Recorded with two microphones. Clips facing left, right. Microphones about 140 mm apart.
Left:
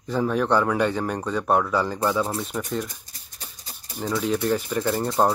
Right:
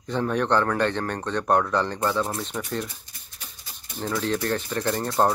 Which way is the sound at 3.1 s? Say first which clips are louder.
Left 2 dB; 35° left (ahead or behind).